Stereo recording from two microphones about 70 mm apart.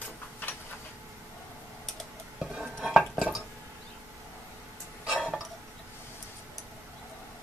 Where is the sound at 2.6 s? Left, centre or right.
Centre.